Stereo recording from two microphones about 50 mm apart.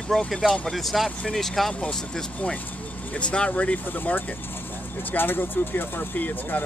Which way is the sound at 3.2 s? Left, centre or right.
Left.